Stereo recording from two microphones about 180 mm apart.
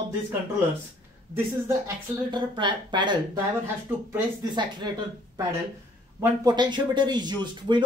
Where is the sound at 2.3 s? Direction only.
25° right (ahead or behind).